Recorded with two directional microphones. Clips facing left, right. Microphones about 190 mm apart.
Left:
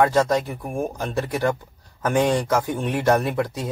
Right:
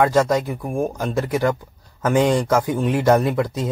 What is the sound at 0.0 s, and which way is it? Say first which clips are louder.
Speech: right 2 dB; 15° right (ahead or behind).